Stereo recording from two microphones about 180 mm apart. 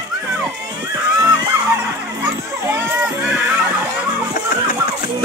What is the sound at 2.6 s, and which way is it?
Children playing, 10° right (ahead or behind).